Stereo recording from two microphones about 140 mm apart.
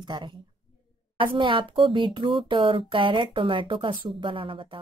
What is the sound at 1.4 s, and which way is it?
A woman's voice, 35° right (ahead or behind).